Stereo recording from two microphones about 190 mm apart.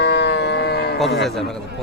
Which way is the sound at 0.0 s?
60° left (ahead or behind).